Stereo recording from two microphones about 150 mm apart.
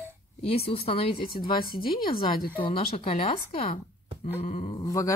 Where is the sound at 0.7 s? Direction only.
40° left (ahead or behind).